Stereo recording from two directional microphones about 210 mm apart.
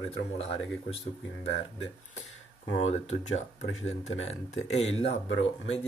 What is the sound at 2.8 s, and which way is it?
Speech, 35° left (ahead or behind).